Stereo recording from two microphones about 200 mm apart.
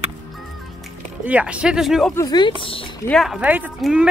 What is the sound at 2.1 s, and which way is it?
Speech, 20° left (ahead or behind).